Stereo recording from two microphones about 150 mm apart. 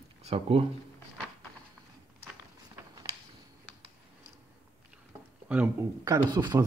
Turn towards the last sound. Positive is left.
turn(degrees=-25)  # may be behind; listen again after turning